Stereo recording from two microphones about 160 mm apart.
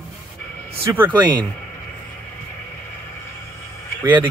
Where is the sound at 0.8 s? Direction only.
10° right (ahead or behind).